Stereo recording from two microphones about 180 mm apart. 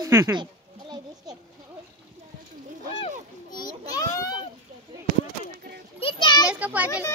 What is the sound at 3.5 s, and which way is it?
Children playing, 20° left (ahead or behind).